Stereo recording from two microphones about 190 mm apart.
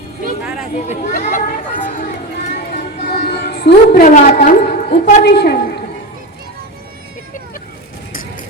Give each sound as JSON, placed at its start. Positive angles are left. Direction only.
{"t": 0.9, "sound": "a woman's voice", "side_deg": 40}
{"t": 3.1, "sound": "a sound", "side_deg": 55}
{"t": 4.0, "sound": "a woman's voice", "side_deg": 40}